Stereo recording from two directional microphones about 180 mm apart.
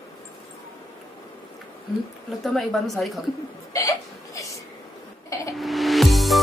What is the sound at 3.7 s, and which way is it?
Hiccup, 20° left (ahead or behind).